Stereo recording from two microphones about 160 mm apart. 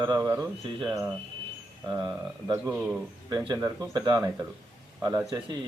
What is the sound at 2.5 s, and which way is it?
Speech, 15° right (ahead or behind).